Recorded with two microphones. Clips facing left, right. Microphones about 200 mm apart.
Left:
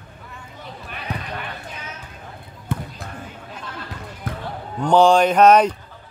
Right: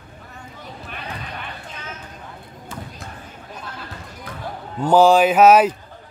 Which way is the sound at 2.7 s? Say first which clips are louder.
Left 7 dB; 60° left (ahead or behind).